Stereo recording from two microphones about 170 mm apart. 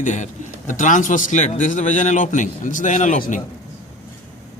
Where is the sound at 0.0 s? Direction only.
45° left (ahead or behind).